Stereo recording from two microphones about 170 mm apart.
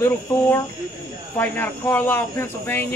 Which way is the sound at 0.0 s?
15° left (ahead or behind).